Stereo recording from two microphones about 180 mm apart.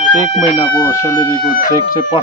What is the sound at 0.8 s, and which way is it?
Speech, 20° left (ahead or behind).